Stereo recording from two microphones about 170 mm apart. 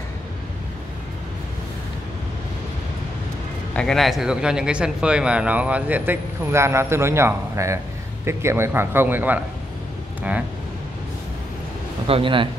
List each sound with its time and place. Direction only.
3.7 s speech: 5° left (ahead or behind)
12.1 s speech: 30° right (ahead or behind)